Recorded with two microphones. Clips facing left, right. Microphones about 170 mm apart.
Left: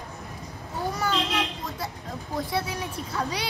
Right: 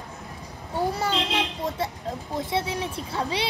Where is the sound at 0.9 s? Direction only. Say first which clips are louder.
Right 1 dB; 25° right (ahead or behind).